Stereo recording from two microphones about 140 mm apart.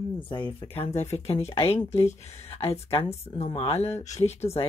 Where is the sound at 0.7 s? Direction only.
50° left (ahead or behind).